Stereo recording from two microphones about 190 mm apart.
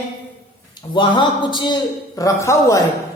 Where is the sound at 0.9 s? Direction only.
25° left (ahead or behind).